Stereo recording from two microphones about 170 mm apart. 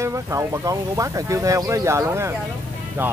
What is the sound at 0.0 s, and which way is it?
Speech, 15° right (ahead or behind).